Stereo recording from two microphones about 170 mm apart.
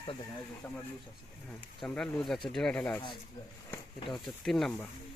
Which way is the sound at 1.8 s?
5° left (ahead or behind).